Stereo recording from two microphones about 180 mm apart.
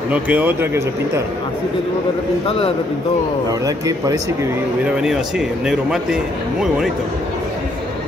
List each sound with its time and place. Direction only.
0.1 s speech: 10° right (ahead or behind)
3.6 s speech: 20° right (ahead or behind)
5.7 s speech: 5° right (ahead or behind)